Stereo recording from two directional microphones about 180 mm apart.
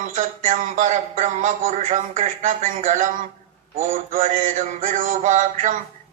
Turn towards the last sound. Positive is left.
turn(degrees=-45)  # may be behind; listen again after turning